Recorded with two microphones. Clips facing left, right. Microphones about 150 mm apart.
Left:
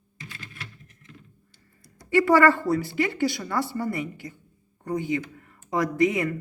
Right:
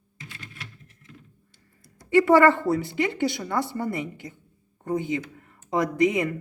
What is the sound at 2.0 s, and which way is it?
Speech, 20° right (ahead or behind).